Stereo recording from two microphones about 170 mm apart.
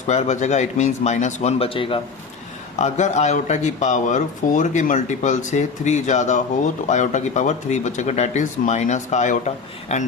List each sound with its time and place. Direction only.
0.1 s speech: 45° left (ahead or behind)
2.7 s speech: 40° left (ahead or behind)